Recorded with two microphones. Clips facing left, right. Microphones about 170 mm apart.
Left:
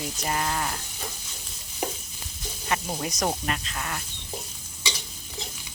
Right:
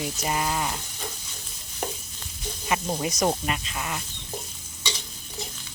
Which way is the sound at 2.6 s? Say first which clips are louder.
Right 2 dB; 5° right (ahead or behind).